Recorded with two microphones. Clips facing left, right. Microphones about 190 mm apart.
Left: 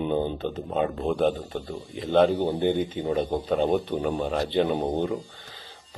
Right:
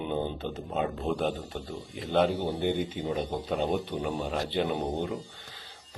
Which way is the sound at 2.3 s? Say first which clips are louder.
Left 6 dB; 15° left (ahead or behind).